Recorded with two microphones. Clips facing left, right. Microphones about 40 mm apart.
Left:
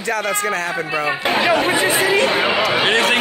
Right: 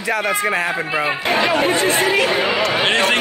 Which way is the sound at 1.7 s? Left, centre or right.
Centre.